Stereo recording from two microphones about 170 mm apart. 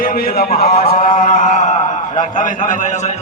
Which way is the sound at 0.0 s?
60° left (ahead or behind).